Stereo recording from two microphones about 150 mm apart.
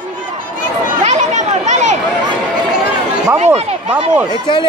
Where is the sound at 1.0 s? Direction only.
50° right (ahead or behind).